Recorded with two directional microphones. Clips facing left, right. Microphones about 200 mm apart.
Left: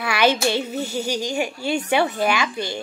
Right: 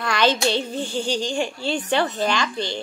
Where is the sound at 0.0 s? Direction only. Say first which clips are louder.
Left 1 dB; 10° left (ahead or behind).